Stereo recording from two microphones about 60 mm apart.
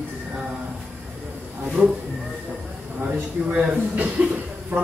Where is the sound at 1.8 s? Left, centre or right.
Right.